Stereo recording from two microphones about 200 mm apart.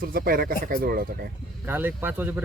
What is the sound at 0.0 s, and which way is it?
Speech, 45° right (ahead or behind).